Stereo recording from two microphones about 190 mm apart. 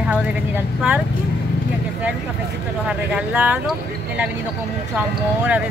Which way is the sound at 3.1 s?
5° right (ahead or behind).